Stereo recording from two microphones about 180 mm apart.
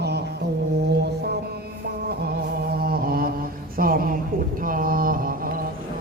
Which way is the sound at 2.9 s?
55° right (ahead or behind).